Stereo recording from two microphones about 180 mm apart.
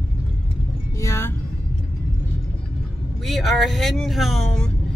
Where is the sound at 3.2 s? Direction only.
Centre (ahead or behind).